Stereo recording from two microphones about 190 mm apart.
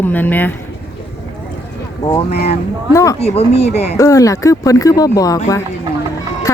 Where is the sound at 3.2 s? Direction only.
35° left (ahead or behind).